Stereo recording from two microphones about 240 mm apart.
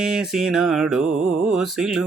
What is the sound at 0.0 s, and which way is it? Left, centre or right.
Mantra, centre.